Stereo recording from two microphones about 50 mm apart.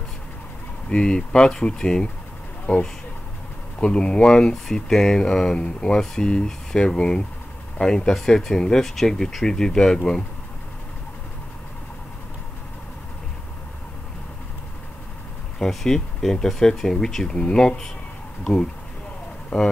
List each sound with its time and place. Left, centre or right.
0.8 s speech: centre
2.7 s speech: left
3.8 s speech: centre
15.6 s speech: centre